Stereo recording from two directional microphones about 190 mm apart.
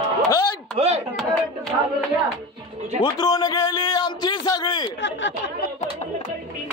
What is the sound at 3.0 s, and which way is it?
A man's voice, 20° left (ahead or behind).